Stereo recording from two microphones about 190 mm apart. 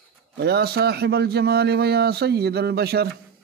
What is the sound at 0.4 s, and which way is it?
Speech, 55° right (ahead or behind).